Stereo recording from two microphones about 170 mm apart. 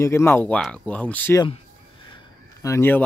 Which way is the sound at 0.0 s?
15° left (ahead or behind).